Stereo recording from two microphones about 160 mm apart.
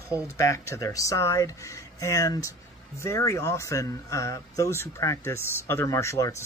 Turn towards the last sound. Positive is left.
turn(degrees=15)  # may be behind; listen again after turning